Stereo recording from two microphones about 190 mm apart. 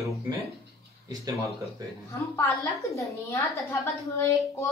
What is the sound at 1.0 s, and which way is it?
Speech, 20° right (ahead or behind).